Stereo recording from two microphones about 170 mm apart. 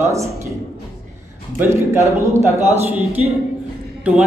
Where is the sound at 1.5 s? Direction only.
15° right (ahead or behind).